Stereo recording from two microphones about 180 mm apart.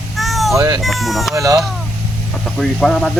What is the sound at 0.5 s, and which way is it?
Speech, 15° right (ahead or behind).